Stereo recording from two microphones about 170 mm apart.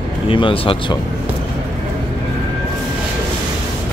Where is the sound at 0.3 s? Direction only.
30° left (ahead or behind).